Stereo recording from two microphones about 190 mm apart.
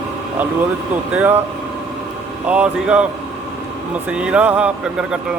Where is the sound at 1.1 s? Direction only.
10° right (ahead or behind).